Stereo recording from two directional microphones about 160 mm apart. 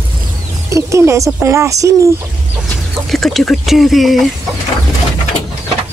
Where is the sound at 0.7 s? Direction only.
20° right (ahead or behind).